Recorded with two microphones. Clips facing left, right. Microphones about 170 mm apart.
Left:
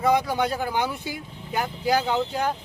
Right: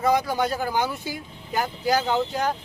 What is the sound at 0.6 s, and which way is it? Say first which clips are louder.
Speech: right 1 dB; 15° left (ahead or behind).